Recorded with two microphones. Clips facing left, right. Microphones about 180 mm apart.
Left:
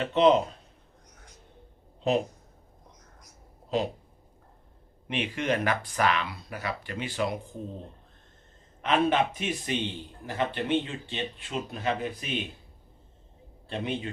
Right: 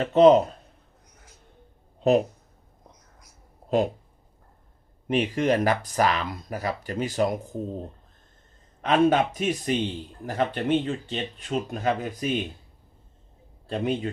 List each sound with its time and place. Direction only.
0.0 s speech: 40° right (ahead or behind)
5.0 s speech: 40° right (ahead or behind)
13.7 s speech: 40° right (ahead or behind)